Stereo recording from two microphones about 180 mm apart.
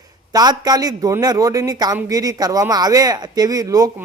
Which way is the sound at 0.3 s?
20° right (ahead or behind).